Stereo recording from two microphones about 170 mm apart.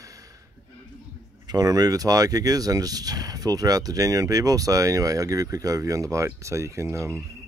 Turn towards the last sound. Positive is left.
turn(degrees=-15)  # may be behind; listen again after turning